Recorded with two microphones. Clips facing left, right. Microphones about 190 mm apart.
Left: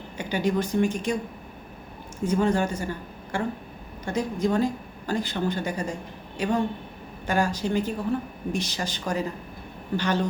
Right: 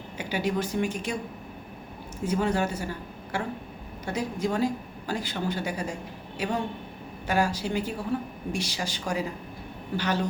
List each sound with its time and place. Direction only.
0.2 s speech: 5° right (ahead or behind)
2.2 s speech: 5° right (ahead or behind)